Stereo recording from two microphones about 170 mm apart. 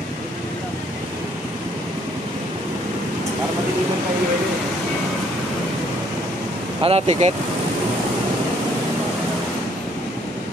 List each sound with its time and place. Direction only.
6.8 s speech: 35° right (ahead or behind)